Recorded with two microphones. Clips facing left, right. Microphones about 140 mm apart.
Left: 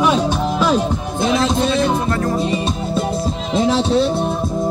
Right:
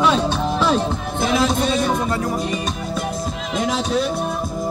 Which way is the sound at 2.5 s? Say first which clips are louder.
Left 4 dB; 30° left (ahead or behind).